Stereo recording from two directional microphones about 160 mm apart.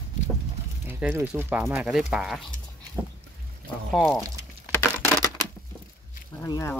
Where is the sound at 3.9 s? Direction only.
Centre (ahead or behind).